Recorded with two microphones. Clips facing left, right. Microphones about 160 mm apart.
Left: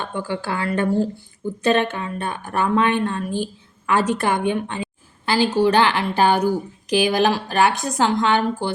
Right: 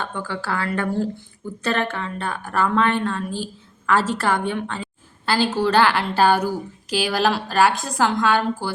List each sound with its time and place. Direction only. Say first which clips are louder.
0.0 s a woman's voice: left 2 dB; 15° left (ahead or behind)